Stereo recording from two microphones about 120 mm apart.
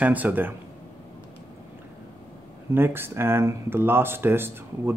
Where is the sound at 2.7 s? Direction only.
20° right (ahead or behind).